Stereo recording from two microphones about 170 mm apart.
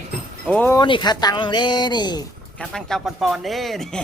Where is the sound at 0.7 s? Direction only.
25° left (ahead or behind).